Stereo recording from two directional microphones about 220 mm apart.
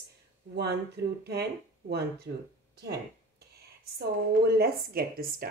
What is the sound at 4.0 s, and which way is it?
A woman's voice, 45° right (ahead or behind).